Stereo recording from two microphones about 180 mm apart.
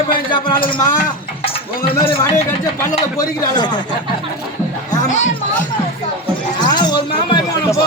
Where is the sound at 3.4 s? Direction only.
20° left (ahead or behind).